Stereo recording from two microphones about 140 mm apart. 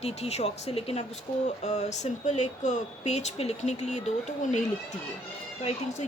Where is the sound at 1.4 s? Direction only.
55° left (ahead or behind).